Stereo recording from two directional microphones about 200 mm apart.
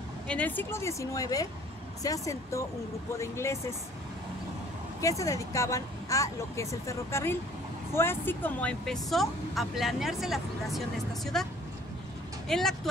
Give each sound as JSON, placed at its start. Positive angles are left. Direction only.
{"t": 0.3, "sound": "speech", "side_deg": 10}
{"t": 5.0, "sound": "speech", "side_deg": 15}